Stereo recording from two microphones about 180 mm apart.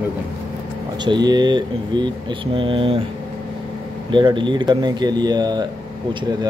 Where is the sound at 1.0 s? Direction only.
25° right (ahead or behind).